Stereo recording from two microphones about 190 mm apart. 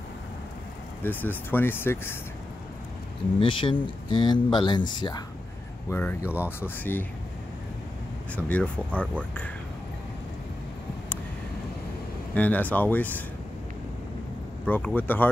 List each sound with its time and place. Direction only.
1.0 s speech: 10° left (ahead or behind)
3.3 s speech: 25° left (ahead or behind)
5.9 s speech: 10° left (ahead or behind)
6.2 s speech: 10° right (ahead or behind)
6.6 s speech: 10° left (ahead or behind)
8.4 s speech: 5° left (ahead or behind)
12.4 s speech: 10° left (ahead or behind)
14.7 s speech: 10° left (ahead or behind)